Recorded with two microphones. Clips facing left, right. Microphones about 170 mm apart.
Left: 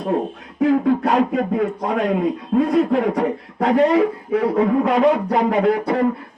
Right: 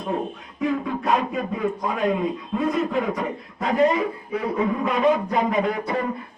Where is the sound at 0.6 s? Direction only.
70° left (ahead or behind).